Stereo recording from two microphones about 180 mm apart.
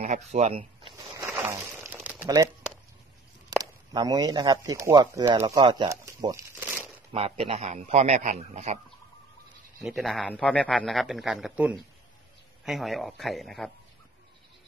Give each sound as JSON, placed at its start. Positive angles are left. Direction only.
{"t": 0.0, "sound": "speech", "side_deg": -40}
{"t": 2.2, "sound": "speech", "side_deg": -20}
{"t": 3.9, "sound": "speech", "side_deg": -20}
{"t": 7.1, "sound": "a man's voice", "side_deg": -35}
{"t": 9.8, "sound": "a man's voice", "side_deg": 0}